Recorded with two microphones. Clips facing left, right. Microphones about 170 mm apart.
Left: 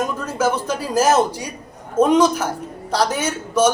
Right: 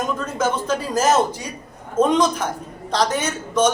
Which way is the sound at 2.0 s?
10° left (ahead or behind).